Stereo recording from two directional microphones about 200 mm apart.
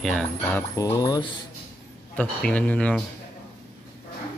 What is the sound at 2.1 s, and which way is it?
Speech, 5° left (ahead or behind).